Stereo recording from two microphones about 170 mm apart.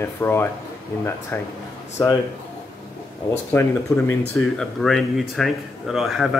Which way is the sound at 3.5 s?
15° left (ahead or behind).